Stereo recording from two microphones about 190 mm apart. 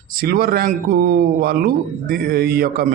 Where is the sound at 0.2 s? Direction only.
50° right (ahead or behind).